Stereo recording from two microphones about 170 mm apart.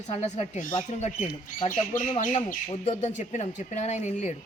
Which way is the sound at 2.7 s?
40° left (ahead or behind).